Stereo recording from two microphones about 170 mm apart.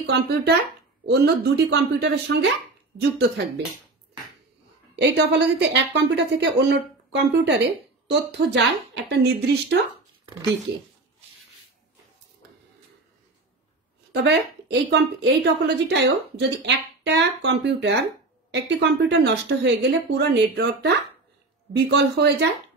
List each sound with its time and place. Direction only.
0.0 s speech: 75° right (ahead or behind)
3.0 s speech: 75° right (ahead or behind)
4.9 s speech: 85° right
14.1 s a woman's voice: 85° right